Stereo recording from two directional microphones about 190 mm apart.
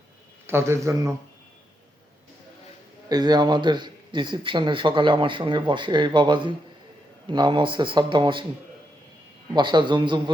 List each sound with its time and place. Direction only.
0.4 s a man's voice: 15° right (ahead or behind)
3.1 s speech: 20° right (ahead or behind)
9.6 s speech: 25° right (ahead or behind)